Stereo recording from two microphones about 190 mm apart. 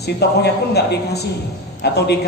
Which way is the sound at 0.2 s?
60° left (ahead or behind).